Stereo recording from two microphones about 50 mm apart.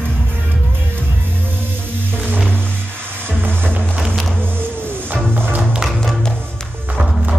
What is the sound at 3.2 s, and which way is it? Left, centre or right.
Music, right.